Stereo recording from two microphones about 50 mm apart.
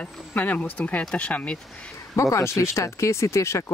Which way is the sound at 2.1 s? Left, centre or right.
Left.